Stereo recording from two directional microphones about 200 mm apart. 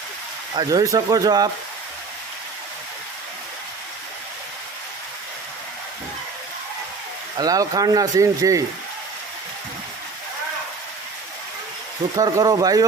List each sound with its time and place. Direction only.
0.5 s speech: 20° right (ahead or behind)
7.3 s speech: 20° right (ahead or behind)
12.1 s speech: 20° right (ahead or behind)